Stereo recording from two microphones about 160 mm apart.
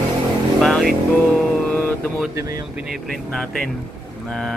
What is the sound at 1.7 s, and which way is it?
Mantra, 10° left (ahead or behind).